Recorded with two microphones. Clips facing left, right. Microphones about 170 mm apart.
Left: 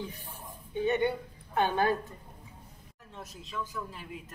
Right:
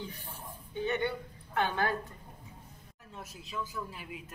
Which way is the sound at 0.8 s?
20° left (ahead or behind).